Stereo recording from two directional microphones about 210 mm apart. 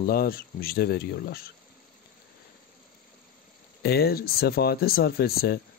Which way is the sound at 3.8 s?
50° left (ahead or behind).